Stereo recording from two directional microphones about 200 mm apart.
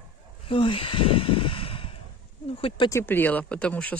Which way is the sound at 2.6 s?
30° left (ahead or behind).